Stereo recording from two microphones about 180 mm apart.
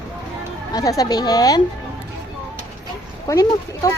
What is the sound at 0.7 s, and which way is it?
Speech, 20° left (ahead or behind).